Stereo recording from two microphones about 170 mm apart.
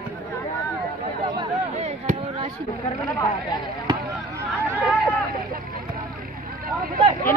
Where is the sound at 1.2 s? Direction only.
25° right (ahead or behind).